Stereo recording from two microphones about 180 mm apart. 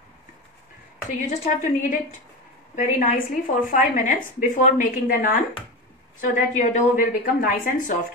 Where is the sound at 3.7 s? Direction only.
45° left (ahead or behind).